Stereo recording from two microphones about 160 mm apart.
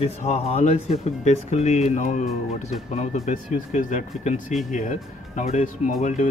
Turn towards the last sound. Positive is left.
turn(degrees=50)  # may be behind; listen again after turning